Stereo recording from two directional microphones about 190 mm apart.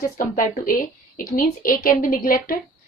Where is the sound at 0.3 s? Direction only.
45° left (ahead or behind).